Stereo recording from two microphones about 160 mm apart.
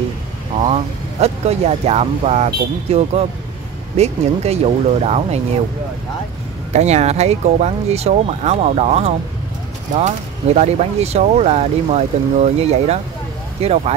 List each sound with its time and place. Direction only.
0.6 s speech: 40° right (ahead or behind)
6.7 s speech: 45° right (ahead or behind)